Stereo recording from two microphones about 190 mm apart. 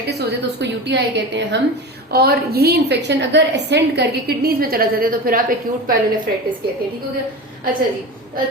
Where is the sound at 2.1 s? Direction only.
55° right (ahead or behind).